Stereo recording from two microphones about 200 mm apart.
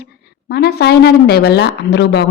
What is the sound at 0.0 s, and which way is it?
A woman's voice, 55° left (ahead or behind).